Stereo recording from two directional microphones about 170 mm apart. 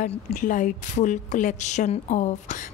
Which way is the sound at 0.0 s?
50° left (ahead or behind).